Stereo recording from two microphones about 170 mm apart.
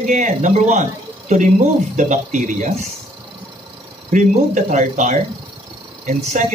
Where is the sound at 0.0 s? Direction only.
45° right (ahead or behind).